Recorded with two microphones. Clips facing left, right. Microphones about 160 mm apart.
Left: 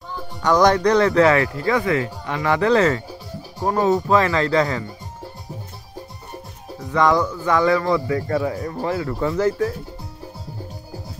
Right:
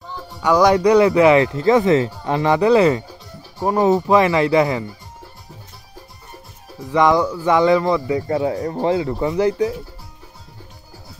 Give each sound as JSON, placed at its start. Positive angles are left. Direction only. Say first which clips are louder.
{"t": 0.1, "sound": "a man's voice", "louder": "right 1 dB", "side_deg": -10}
{"t": 2.5, "sound": "a man's voice", "louder": "right 3 dB", "side_deg": -15}
{"t": 6.9, "sound": "a man's voice", "louder": "right 2 dB", "side_deg": -15}